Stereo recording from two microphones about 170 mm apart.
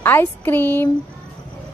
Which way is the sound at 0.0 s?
10° left (ahead or behind).